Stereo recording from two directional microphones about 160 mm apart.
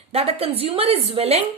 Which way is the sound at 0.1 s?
40° right (ahead or behind).